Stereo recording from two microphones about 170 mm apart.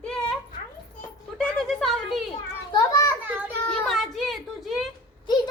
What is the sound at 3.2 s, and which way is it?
Speech, 10° right (ahead or behind).